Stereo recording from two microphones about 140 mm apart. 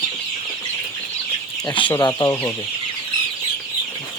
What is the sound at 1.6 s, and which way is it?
Speech, 35° left (ahead or behind).